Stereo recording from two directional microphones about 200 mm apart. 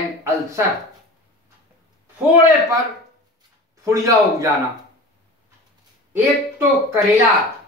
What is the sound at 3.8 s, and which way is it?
Speech, 15° right (ahead or behind).